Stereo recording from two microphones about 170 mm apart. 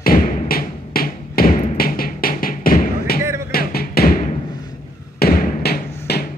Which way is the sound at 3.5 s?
65° left (ahead or behind).